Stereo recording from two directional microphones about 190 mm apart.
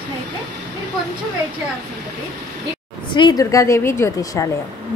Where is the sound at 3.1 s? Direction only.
20° left (ahead or behind).